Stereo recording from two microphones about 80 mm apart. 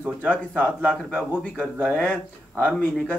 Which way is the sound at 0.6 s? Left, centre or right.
Centre.